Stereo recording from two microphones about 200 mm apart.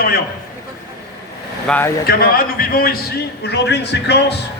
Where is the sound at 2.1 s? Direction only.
45° left (ahead or behind).